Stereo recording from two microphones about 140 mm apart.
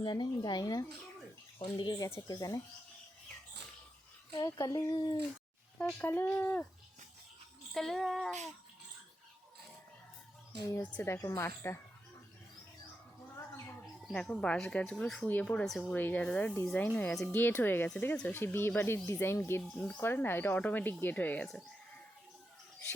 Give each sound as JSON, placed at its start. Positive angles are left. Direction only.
{"t": 0.0, "sound": "a woman's voice", "side_deg": 30}
{"t": 4.4, "sound": "speech", "side_deg": 30}
{"t": 6.0, "sound": "speech", "side_deg": 15}
{"t": 7.7, "sound": "child singing", "side_deg": 0}
{"t": 10.6, "sound": "speech", "side_deg": 20}
{"t": 13.8, "sound": "speech", "side_deg": 5}
{"t": 19.7, "sound": "child singing", "side_deg": 5}
{"t": 20.0, "sound": "speech", "side_deg": 15}